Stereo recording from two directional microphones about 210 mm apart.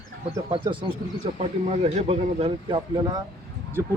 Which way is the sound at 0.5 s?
25° right (ahead or behind).